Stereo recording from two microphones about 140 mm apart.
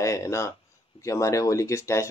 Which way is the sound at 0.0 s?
20° left (ahead or behind).